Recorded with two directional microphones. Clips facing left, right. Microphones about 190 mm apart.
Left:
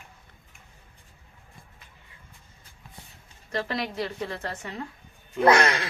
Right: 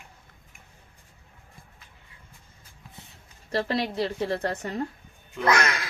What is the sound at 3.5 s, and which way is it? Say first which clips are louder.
A woman's voice: right 3 dB; 35° right (ahead or behind).